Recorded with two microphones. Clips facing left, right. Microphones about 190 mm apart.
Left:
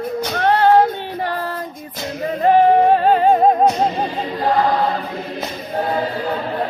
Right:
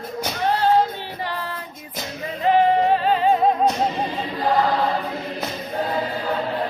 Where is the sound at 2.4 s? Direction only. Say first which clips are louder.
Left 5 dB; 50° left (ahead or behind).